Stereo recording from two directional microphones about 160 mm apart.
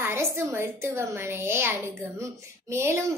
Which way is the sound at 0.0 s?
15° right (ahead or behind).